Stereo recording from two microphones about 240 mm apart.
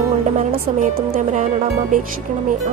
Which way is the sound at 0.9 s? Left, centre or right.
Right.